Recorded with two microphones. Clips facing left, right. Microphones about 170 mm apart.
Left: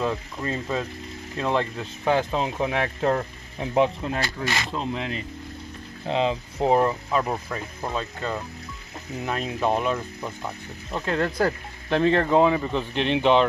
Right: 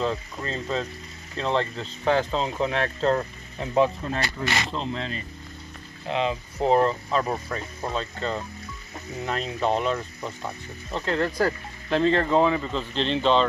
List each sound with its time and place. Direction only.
0.0 s speech: 10° left (ahead or behind)
6.0 s speech: 30° left (ahead or behind)
6.6 s speech: 15° left (ahead or behind)
11.2 s speech: centre (ahead or behind)
11.9 s speech: 15° left (ahead or behind)